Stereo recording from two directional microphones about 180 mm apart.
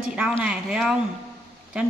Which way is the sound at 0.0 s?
5° right (ahead or behind).